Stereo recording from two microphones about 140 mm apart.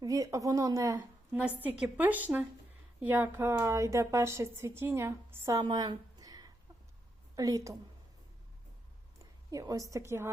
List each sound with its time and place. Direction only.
0.0 s a woman's voice: 25° right (ahead or behind)
5.6 s a sound: 30° right (ahead or behind)
7.3 s a woman's voice: 25° right (ahead or behind)
9.5 s a woman's voice: 25° right (ahead or behind)